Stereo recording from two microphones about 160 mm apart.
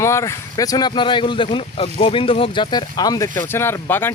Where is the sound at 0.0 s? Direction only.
15° left (ahead or behind).